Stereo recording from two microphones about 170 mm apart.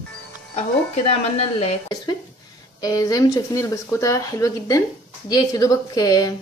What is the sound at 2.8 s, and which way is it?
A woman's voice, 20° left (ahead or behind).